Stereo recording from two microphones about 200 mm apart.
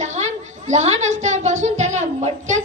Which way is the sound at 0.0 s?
35° right (ahead or behind).